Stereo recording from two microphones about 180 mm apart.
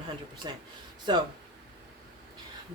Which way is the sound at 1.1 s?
25° right (ahead or behind).